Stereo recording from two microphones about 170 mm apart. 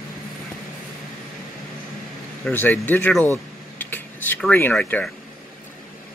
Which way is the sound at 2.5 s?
10° left (ahead or behind).